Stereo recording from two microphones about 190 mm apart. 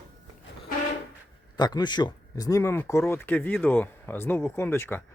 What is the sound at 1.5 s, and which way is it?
Speech, 20° left (ahead or behind).